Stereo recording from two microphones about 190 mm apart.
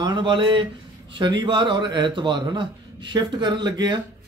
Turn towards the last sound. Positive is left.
turn(degrees=-25)  # may be behind; listen again after turning